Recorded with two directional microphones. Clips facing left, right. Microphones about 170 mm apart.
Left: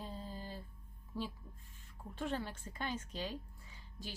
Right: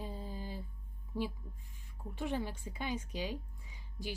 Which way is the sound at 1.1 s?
15° right (ahead or behind).